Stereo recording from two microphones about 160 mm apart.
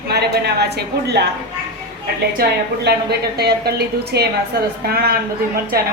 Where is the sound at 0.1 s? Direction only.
90° right.